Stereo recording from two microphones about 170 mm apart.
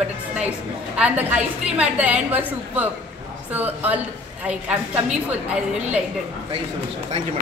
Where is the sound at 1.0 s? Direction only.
10° right (ahead or behind).